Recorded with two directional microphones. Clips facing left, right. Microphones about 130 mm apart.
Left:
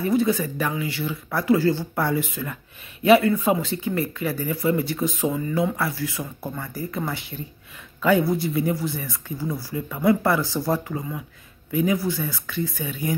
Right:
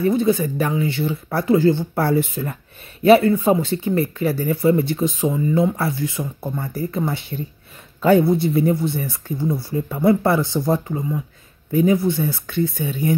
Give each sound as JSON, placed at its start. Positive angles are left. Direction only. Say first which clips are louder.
{"t": 0.1, "sound": "speech", "louder": "right 3 dB", "side_deg": -25}